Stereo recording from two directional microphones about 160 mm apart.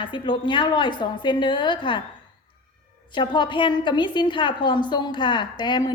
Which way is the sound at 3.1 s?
30° left (ahead or behind).